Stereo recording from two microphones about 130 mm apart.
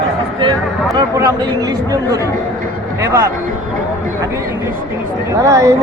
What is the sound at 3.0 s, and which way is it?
Speech, 20° right (ahead or behind).